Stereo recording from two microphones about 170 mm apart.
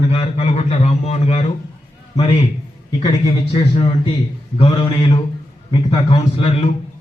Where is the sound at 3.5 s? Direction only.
35° left (ahead or behind).